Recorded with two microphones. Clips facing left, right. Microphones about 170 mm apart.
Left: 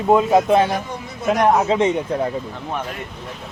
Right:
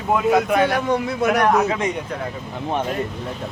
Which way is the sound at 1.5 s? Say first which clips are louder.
Left 2 dB; 25° left (ahead or behind).